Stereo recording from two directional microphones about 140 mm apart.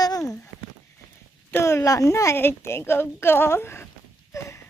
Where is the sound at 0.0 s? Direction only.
25° left (ahead or behind).